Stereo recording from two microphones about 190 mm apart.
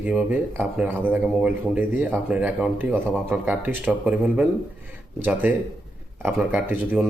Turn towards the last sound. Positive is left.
turn(degrees=-10)  # may be behind; listen again after turning